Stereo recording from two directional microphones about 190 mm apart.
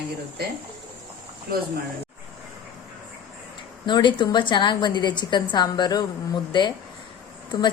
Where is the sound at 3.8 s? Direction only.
25° left (ahead or behind).